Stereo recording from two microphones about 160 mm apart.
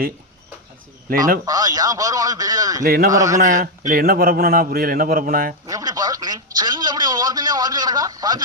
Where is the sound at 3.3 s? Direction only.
50° right (ahead or behind).